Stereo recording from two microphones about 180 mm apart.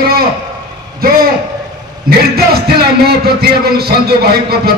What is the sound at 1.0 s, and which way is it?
Speech, 55° right (ahead or behind).